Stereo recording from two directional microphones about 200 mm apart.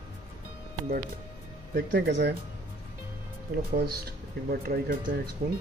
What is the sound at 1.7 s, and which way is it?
Speech, 55° right (ahead or behind).